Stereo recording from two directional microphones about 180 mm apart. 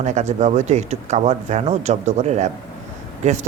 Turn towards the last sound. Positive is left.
turn(degrees=-40)  # may be behind; listen again after turning